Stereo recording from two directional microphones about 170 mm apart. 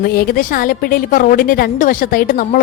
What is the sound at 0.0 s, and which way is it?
A woman's voice, 60° left (ahead or behind).